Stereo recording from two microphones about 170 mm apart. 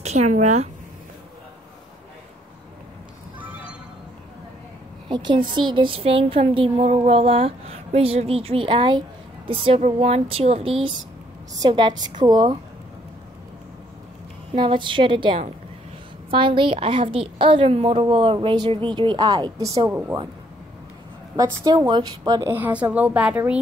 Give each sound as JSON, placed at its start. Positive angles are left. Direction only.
{"t": 0.0, "sound": "speech", "side_deg": -40}
{"t": 5.0, "sound": "a woman's voice", "side_deg": -30}
{"t": 14.5, "sound": "a woman's voice", "side_deg": -30}
{"t": 19.9, "sound": "a woman's voice", "side_deg": -10}
{"t": 21.6, "sound": "a woman's voice", "side_deg": -30}